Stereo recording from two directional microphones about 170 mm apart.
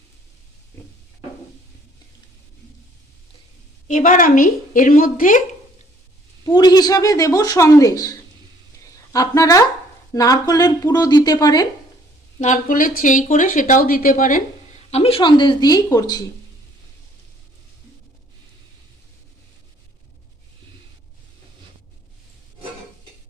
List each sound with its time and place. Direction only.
3.8 s speech: 50° left (ahead or behind)
6.4 s speech: 25° left (ahead or behind)
9.1 s speech: 20° left (ahead or behind)
12.4 s speech: 50° left (ahead or behind)
14.8 s speech: 40° left (ahead or behind)